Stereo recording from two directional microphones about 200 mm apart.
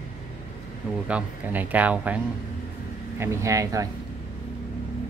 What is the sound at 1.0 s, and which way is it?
Speech, 10° right (ahead or behind).